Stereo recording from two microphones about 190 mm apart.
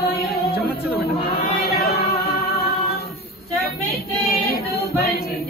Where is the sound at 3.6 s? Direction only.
55° left (ahead or behind).